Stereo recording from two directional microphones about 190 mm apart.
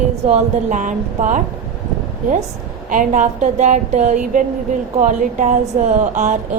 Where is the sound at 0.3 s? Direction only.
35° right (ahead or behind).